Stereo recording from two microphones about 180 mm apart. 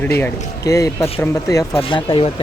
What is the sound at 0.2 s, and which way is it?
A man's voice, 15° left (ahead or behind).